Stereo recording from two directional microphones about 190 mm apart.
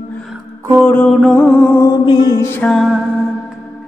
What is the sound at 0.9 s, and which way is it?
Music, 5° left (ahead or behind).